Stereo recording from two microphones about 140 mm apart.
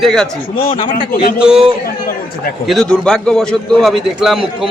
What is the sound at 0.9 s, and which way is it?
Speech, 90° left.